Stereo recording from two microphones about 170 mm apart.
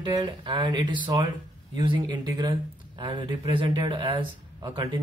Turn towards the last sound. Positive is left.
turn(degrees=-25)  # may be behind; listen again after turning